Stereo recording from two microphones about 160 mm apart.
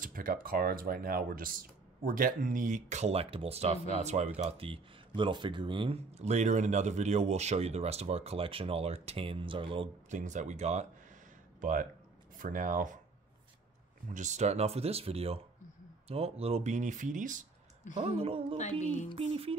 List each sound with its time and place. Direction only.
0.0 s speech: 60° right (ahead or behind); by 9.8 s 35° right (ahead or behind)
10.0 s speech: 50° right (ahead or behind)
11.6 s speech: 55° right (ahead or behind)
14.0 s speech: 50° right (ahead or behind)
17.9 s speech: 40° right (ahead or behind)
18.6 s music: 45° left (ahead or behind)
19.1 s speech: 35° right (ahead or behind)